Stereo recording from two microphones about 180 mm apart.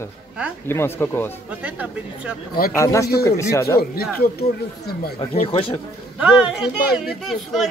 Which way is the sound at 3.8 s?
55° left (ahead or behind).